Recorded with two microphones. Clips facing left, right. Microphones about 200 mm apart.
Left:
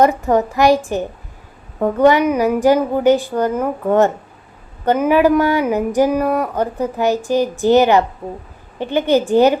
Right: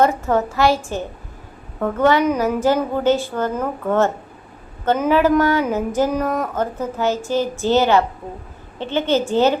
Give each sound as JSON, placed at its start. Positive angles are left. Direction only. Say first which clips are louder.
{"t": 0.0, "sound": "speech", "louder": "left 3 dB", "side_deg": 15}